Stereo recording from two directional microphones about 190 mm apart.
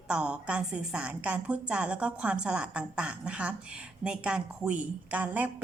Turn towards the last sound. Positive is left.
turn(degrees=-10)  # may be behind; listen again after turning